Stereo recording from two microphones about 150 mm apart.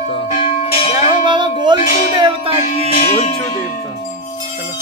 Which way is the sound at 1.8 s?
65° left (ahead or behind).